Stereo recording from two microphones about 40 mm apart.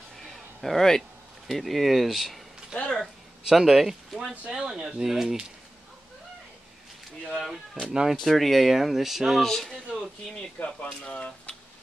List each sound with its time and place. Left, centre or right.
0.2 s a sound: centre
1.5 s speech: centre
3.4 s speech: centre
4.5 s speech: centre
7.2 s speech: centre
7.8 s speech: centre
8.2 s speech: centre
9.5 s speech: centre
9.9 s speech: left